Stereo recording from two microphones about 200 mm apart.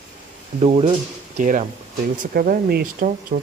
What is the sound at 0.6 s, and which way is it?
Speech, 30° right (ahead or behind).